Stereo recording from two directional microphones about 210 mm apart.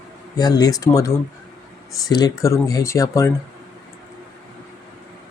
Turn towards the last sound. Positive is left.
turn(degrees=15)  # may be behind; listen again after turning